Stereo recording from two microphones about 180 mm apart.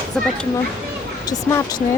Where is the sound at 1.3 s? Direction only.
20° left (ahead or behind).